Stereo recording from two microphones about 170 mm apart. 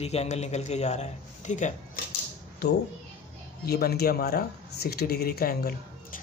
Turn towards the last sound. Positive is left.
turn(degrees=60)  # may be behind; listen again after turning